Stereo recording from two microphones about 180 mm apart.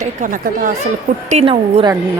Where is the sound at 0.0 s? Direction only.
45° right (ahead or behind).